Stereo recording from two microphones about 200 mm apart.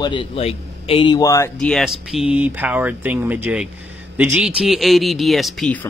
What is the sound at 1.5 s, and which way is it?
A man's voice, centre (ahead or behind).